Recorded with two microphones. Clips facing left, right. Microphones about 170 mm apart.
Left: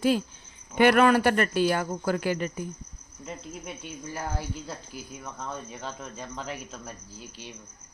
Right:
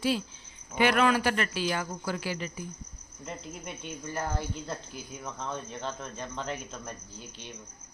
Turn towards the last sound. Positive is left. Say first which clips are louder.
# left 2 dB
turn(degrees=5)  # may be behind; listen again after turning